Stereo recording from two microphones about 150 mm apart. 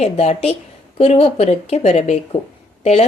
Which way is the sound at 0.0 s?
45° left (ahead or behind).